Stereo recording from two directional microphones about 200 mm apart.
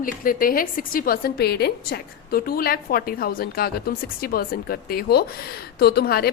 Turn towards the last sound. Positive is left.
turn(degrees=50)  # may be behind; listen again after turning